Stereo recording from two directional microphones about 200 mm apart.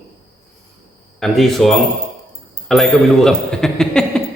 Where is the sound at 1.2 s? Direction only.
Centre (ahead or behind).